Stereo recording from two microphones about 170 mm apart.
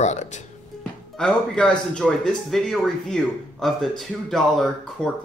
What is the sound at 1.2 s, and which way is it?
Speech, 5° left (ahead or behind).